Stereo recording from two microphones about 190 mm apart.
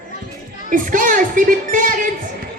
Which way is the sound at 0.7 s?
45° right (ahead or behind).